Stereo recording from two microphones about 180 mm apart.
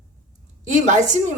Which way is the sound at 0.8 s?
40° right (ahead or behind).